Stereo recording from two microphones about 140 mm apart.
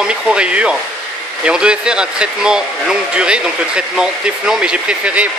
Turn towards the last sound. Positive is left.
turn(degrees=-10)  # may be behind; listen again after turning